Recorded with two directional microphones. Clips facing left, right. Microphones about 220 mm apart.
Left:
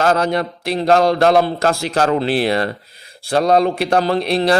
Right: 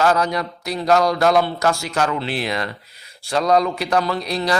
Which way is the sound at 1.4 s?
45° left (ahead or behind).